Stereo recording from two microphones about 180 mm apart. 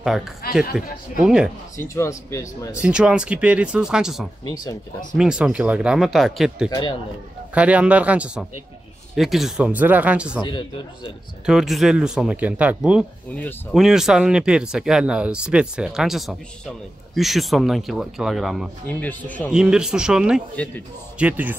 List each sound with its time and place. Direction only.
0.0 s a man's voice: centre (ahead or behind)
1.8 s speech: 15° left (ahead or behind)
2.8 s speech: 5° right (ahead or behind)
6.7 s a man's voice: 25° left (ahead or behind)
7.5 s speech: 5° right (ahead or behind)
11.4 s speech: centre (ahead or behind)
13.4 s speech: 10° left (ahead or behind)
13.7 s speech: centre (ahead or behind)
19.5 s speech: 5° right (ahead or behind)
20.5 s speech: 10° left (ahead or behind)
21.2 s speech: 10° right (ahead or behind)